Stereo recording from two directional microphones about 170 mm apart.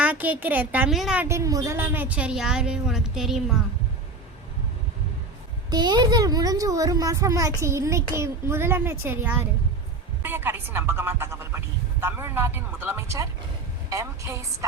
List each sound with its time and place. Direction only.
0.0 s a woman's voice: 10° right (ahead or behind)
5.7 s a woman's voice: 25° right (ahead or behind)